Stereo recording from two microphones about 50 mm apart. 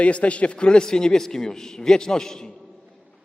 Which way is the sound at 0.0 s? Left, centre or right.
Left.